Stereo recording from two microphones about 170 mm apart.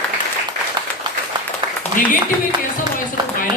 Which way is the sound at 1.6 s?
25° right (ahead or behind).